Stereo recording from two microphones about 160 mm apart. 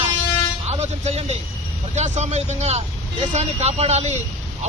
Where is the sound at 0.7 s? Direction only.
45° right (ahead or behind).